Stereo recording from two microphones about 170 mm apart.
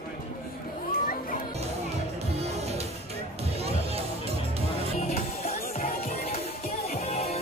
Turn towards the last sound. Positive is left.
turn(degrees=40)  # may be behind; listen again after turning